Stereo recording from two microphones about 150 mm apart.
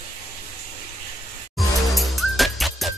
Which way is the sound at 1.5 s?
Centre (ahead or behind).